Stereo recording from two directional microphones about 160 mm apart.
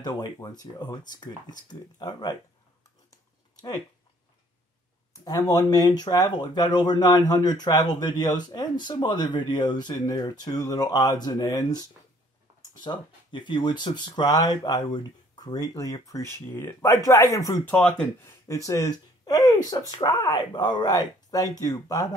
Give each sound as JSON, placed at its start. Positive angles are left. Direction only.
{"t": 0.0, "sound": "speech", "side_deg": 25}
{"t": 5.2, "sound": "speech", "side_deg": 25}